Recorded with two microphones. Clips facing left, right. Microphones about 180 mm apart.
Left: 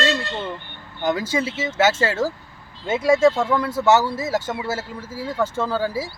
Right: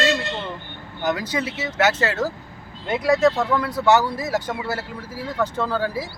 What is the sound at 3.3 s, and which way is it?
Speech, 10° left (ahead or behind).